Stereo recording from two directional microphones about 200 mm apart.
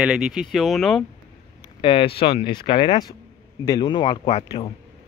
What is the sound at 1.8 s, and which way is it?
Speech, 25° left (ahead or behind).